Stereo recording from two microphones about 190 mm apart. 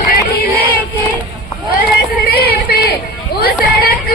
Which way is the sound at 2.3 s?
55° left (ahead or behind).